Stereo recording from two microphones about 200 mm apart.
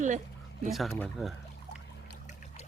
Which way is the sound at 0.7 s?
Centre (ahead or behind).